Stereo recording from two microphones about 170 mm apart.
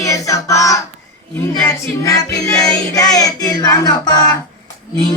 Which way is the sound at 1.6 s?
20° left (ahead or behind).